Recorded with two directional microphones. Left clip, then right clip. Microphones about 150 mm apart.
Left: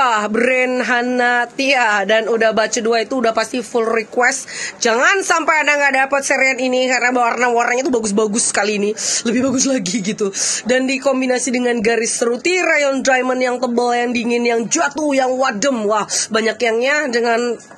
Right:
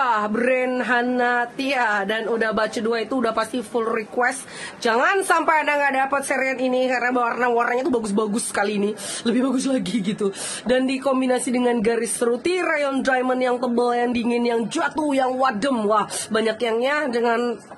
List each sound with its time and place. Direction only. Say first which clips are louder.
0.0 s speech: left 5 dB; 20° left (ahead or behind)